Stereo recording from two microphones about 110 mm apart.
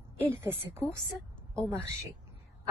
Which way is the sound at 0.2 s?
20° right (ahead or behind).